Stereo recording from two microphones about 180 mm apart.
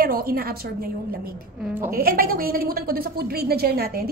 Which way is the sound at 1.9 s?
55° right (ahead or behind).